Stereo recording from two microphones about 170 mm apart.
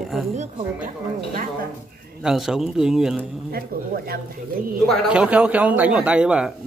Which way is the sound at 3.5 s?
65° right (ahead or behind).